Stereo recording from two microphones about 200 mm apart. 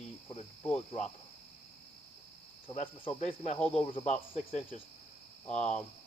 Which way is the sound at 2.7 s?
35° left (ahead or behind).